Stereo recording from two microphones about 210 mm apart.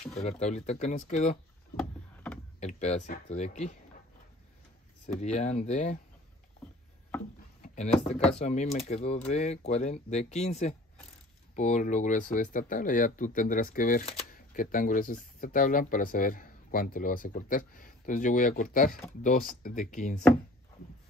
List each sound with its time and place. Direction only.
0.1 s speech: 30° left (ahead or behind)
2.6 s speech: 30° left (ahead or behind)
5.2 s speech: 35° left (ahead or behind)
7.6 s speech: 30° left (ahead or behind)